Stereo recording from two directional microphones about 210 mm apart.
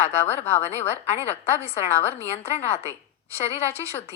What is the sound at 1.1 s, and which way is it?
A woman's voice, 30° left (ahead or behind).